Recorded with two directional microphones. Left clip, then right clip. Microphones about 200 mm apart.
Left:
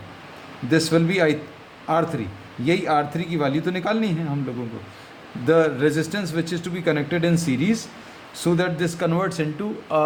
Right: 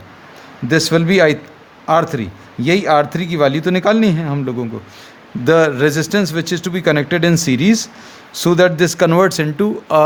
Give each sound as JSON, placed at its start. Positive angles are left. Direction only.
{"t": 0.7, "sound": "a man's voice", "side_deg": -45}
{"t": 5.5, "sound": "a man's voice", "side_deg": -50}